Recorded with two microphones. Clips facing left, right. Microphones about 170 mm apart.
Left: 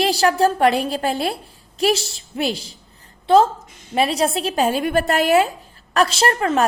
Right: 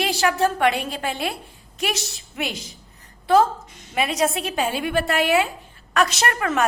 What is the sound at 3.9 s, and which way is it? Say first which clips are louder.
A woman's voice: left 3 dB; 35° left (ahead or behind).